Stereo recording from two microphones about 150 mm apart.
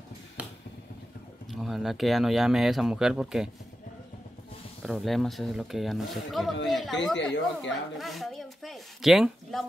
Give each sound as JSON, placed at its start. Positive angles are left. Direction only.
{"t": 0.4, "sound": "finger snapping", "side_deg": -10}
{"t": 1.5, "sound": "speech", "side_deg": 0}
{"t": 4.8, "sound": "speech", "side_deg": 0}